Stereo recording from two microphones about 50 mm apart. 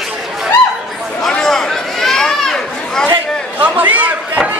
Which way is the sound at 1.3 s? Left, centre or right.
Centre.